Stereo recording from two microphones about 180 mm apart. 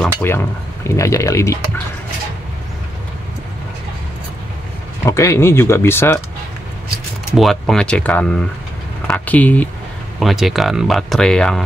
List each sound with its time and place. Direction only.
0.0 s speech: 10° left (ahead or behind)
5.0 s speech: 15° left (ahead or behind)
7.3 s speech: centre (ahead or behind)